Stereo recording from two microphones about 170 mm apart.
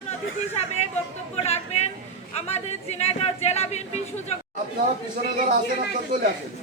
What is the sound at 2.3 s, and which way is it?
A man's voice, 40° left (ahead or behind).